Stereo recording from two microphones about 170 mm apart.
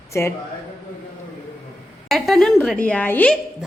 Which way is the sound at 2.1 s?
Centre (ahead or behind).